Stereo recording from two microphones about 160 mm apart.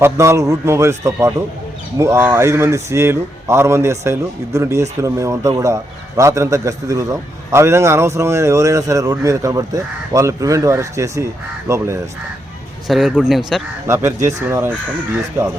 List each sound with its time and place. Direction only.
0.0 s a man's voice: 20° right (ahead or behind)
12.9 s speech: 5° right (ahead or behind)
13.8 s speech: 15° right (ahead or behind)